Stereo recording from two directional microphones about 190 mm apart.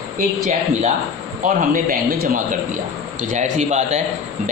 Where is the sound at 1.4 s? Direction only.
45° right (ahead or behind).